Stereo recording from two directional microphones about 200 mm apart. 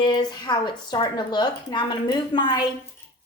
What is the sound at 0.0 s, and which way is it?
A woman's voice, 20° left (ahead or behind).